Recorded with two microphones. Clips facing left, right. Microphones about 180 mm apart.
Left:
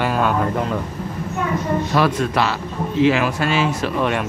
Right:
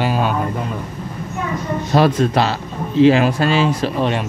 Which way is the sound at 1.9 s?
30° right (ahead or behind).